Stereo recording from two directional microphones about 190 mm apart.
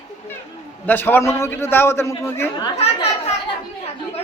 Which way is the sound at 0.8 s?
10° left (ahead or behind).